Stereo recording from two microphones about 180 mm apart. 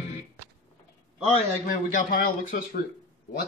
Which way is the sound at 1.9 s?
50° left (ahead or behind).